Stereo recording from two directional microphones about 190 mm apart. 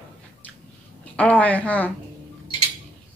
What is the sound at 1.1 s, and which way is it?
Speech, 5° left (ahead or behind).